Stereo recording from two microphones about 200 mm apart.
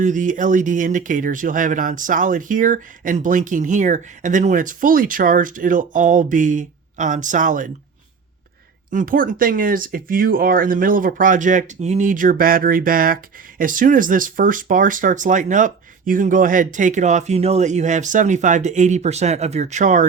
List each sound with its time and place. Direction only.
0.0 s speech: 40° right (ahead or behind)
8.9 s speech: 40° right (ahead or behind)